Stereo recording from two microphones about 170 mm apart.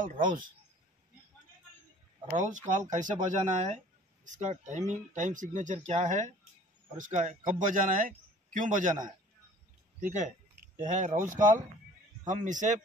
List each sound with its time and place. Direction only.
2.3 s speech: 45° right (ahead or behind)
9.9 s speech: 45° right (ahead or behind)